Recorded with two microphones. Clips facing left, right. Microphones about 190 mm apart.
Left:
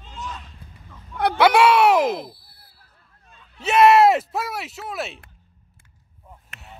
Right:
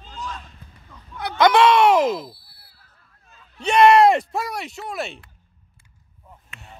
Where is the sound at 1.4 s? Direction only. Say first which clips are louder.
Right 1 dB; 10° left (ahead or behind).